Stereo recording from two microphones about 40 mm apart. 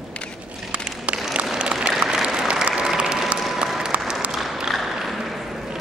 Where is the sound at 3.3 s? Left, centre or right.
Right.